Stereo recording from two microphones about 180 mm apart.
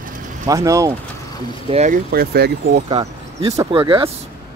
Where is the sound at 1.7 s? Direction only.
40° right (ahead or behind).